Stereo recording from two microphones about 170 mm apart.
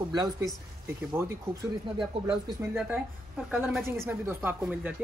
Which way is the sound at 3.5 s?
5° right (ahead or behind).